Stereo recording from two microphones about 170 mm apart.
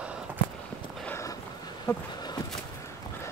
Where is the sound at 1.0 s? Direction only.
15° left (ahead or behind).